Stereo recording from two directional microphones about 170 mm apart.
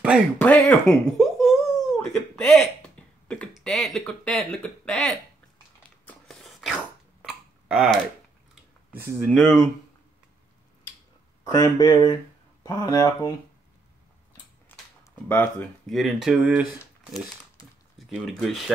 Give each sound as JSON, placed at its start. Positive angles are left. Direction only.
{"t": 0.4, "sound": "a sound", "side_deg": 10}
{"t": 2.0, "sound": "speech", "side_deg": 5}
{"t": 6.0, "sound": "cough", "side_deg": 0}
{"t": 9.2, "sound": "speech", "side_deg": 5}
{"t": 11.4, "sound": "speech", "side_deg": 20}
{"t": 14.7, "sound": "a sound", "side_deg": 10}
{"t": 15.2, "sound": "speech", "side_deg": 10}
{"t": 17.9, "sound": "speech", "side_deg": 0}